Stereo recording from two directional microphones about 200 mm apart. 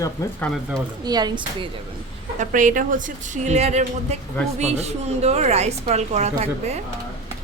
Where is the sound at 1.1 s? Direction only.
20° right (ahead or behind).